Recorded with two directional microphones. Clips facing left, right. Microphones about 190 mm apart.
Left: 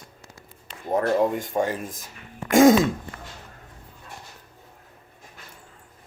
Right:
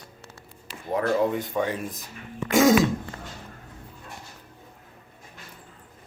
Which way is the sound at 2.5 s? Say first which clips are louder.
Left 4 dB; 50° left (ahead or behind).